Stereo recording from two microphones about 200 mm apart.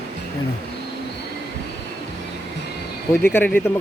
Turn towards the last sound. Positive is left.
turn(degrees=10)  # may be behind; listen again after turning